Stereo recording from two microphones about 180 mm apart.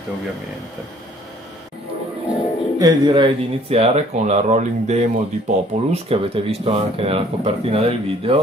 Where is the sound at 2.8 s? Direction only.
25° right (ahead or behind).